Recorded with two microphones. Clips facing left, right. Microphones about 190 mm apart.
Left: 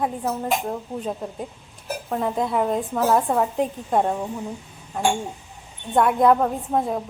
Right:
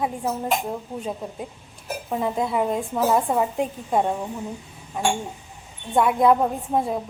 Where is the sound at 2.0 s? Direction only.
5° right (ahead or behind).